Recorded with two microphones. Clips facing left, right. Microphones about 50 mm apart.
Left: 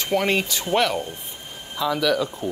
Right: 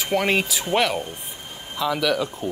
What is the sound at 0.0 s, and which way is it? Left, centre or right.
Speech, centre.